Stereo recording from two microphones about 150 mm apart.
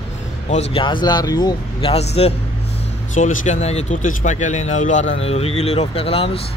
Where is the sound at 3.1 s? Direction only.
55° left (ahead or behind).